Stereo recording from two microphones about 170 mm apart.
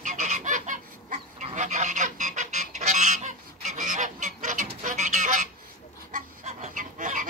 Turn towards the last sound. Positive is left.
turn(degrees=-50)  # may be behind; listen again after turning